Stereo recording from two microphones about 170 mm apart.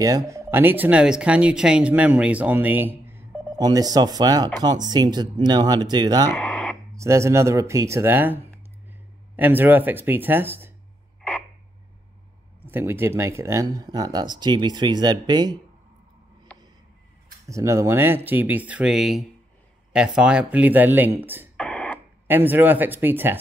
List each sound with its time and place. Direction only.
0.0 s speech: 20° right (ahead or behind)
6.3 s radio: 5° left (ahead or behind)
7.0 s speech: 15° right (ahead or behind)
9.4 s speech: 10° right (ahead or behind)
12.6 s speech: 15° right (ahead or behind)
17.5 s speech: 15° right (ahead or behind)
21.5 s radio: 5° left (ahead or behind)
22.3 s speech: 10° right (ahead or behind)